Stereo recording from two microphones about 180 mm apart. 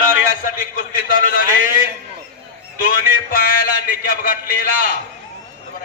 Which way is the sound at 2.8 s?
55° left (ahead or behind).